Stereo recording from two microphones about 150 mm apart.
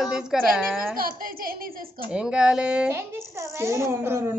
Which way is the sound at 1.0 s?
75° right (ahead or behind).